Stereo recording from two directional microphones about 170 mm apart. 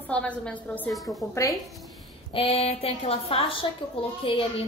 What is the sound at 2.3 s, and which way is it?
A woman's voice, 35° left (ahead or behind).